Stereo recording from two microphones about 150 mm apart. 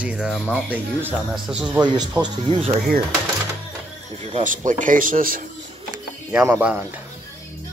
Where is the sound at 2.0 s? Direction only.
30° right (ahead or behind).